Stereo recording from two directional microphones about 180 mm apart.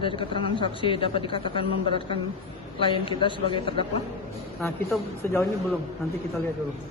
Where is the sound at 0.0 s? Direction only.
30° left (ahead or behind).